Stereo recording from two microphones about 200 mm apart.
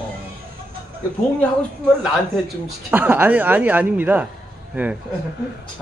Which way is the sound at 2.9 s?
10° right (ahead or behind).